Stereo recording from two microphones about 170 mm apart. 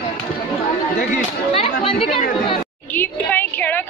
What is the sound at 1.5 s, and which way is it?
Speech, 35° left (ahead or behind).